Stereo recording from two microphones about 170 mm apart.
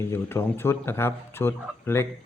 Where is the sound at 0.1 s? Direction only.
15° left (ahead or behind).